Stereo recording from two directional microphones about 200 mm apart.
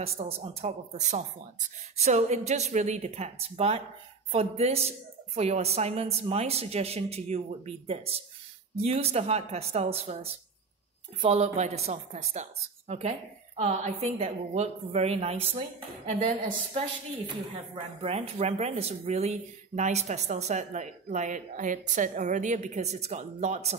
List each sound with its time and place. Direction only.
0.0 s speech: 30° right (ahead or behind)
17.7 s speech: 30° right (ahead or behind)